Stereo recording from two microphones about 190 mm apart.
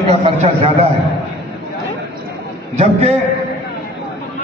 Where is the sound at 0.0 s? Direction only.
30° right (ahead or behind).